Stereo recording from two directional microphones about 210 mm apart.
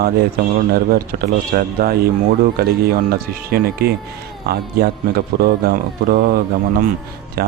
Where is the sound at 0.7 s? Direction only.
45° right (ahead or behind).